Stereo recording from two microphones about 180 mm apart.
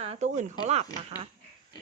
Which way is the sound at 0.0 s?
35° right (ahead or behind).